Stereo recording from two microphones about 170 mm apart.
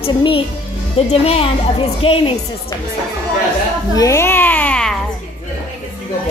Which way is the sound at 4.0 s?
15° left (ahead or behind).